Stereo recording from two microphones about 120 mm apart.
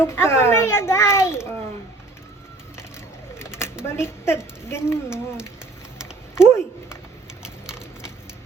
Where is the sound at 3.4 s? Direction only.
20° left (ahead or behind).